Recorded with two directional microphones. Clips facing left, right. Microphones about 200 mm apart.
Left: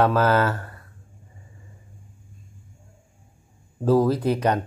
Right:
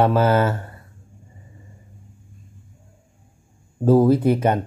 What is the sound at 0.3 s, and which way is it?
Speech, 20° right (ahead or behind).